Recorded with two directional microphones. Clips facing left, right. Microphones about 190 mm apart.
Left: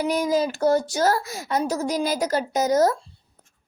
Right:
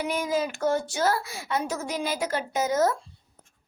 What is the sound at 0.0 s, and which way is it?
Speech, 40° left (ahead or behind).